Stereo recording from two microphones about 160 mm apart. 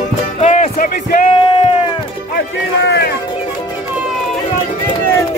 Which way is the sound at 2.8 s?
90° left.